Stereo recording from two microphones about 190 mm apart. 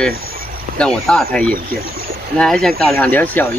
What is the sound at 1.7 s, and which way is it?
Speech, 50° right (ahead or behind).